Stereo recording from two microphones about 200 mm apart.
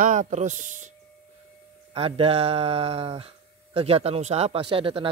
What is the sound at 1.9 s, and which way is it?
Speech, 30° right (ahead or behind).